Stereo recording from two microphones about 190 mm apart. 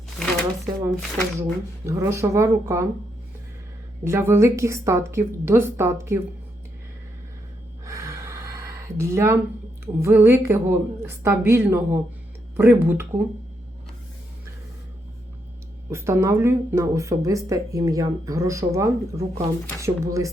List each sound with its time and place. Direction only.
0.2 s a sound: centre (ahead or behind)
1.4 s speech: 15° right (ahead or behind)
4.0 s speech: 15° right (ahead or behind)
7.9 s a sound: 15° right (ahead or behind)
9.8 s speech: 10° right (ahead or behind)
15.9 s speech: 15° right (ahead or behind)